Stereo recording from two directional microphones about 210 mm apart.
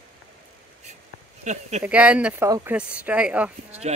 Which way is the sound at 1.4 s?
30° right (ahead or behind).